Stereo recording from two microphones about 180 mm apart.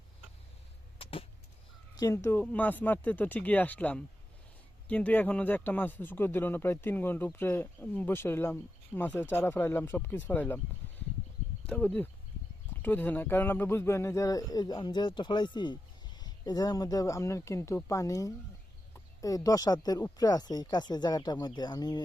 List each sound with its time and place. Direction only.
1.0 s a sound: 30° left (ahead or behind)
2.0 s a man's voice: 15° left (ahead or behind)
11.6 s a man's voice: 5° left (ahead or behind); by 22.0 s 20° left (ahead or behind)